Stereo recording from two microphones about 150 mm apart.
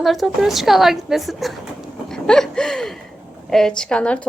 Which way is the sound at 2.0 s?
5° left (ahead or behind).